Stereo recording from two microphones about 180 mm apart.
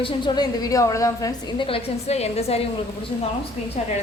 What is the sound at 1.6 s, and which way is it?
Speech, 35° left (ahead or behind).